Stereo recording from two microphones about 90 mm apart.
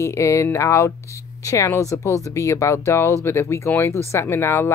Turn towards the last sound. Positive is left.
turn(degrees=30)  # may be behind; listen again after turning